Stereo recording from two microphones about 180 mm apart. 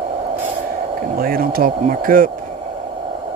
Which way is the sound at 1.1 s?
55° right (ahead or behind).